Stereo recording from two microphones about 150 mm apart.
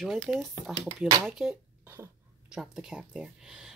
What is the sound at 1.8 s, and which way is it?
Cough, 15° right (ahead or behind).